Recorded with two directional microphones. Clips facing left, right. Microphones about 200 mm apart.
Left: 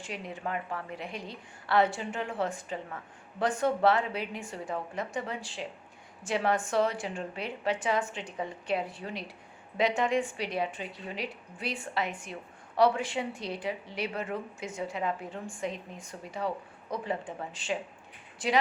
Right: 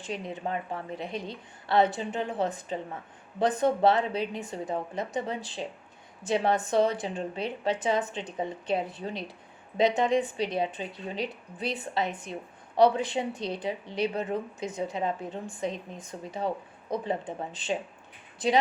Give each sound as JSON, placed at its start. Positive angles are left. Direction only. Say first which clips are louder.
{"t": 0.0, "sound": "a woman's voice", "louder": "right 3 dB", "side_deg": -20}